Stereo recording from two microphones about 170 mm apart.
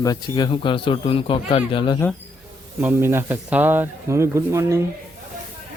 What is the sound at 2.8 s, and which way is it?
Speech, 15° right (ahead or behind).